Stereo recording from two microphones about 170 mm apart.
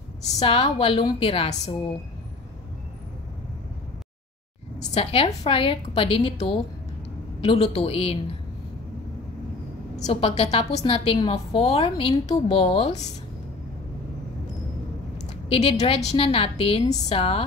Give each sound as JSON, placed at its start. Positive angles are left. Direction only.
{"t": 0.2, "sound": "a woman's voice", "side_deg": 40}
{"t": 4.9, "sound": "a woman's voice", "side_deg": 35}
{"t": 9.9, "sound": "a woman's voice", "side_deg": 40}
{"t": 15.2, "sound": "a woman's voice", "side_deg": 40}